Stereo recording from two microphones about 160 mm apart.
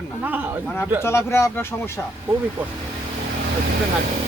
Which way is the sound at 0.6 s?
15° left (ahead or behind).